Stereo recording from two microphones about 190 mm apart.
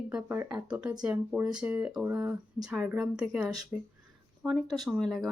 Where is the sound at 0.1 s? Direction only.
10° right (ahead or behind).